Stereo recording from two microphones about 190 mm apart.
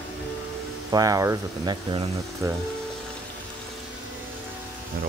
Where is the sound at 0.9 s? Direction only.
20° right (ahead or behind).